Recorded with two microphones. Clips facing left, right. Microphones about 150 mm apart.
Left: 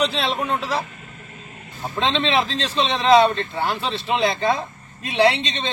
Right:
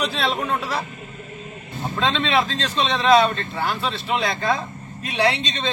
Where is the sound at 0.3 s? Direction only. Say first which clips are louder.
Left 1 dB; 20° left (ahead or behind).